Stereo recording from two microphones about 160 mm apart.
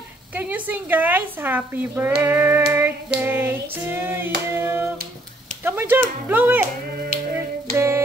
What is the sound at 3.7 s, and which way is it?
A woman's voice, 15° right (ahead or behind).